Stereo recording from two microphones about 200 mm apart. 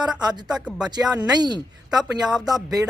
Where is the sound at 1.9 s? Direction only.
Centre (ahead or behind).